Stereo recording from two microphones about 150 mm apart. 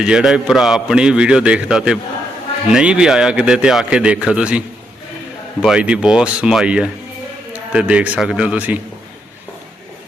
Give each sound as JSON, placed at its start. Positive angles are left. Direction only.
{"t": 0.0, "sound": "a man's voice", "side_deg": -5}
{"t": 5.6, "sound": "a man's voice", "side_deg": -5}